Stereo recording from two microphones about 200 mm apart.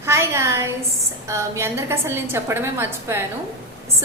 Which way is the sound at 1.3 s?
15° right (ahead or behind).